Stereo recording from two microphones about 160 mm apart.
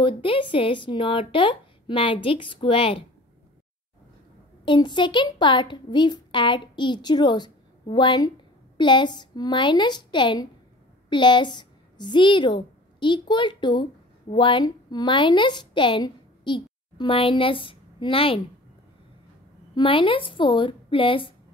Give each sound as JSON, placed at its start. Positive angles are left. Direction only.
{"t": 0.0, "sound": "speech", "side_deg": 30}
{"t": 4.6, "sound": "a woman's voice", "side_deg": 30}
{"t": 19.7, "sound": "speech", "side_deg": 30}